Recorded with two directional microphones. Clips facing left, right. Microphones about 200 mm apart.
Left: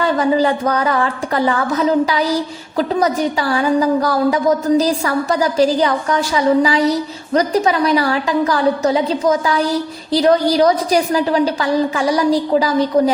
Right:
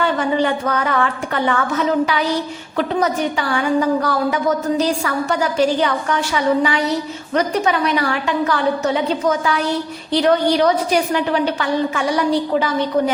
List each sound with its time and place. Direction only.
0.0 s a woman's voice: 35° left (ahead or behind)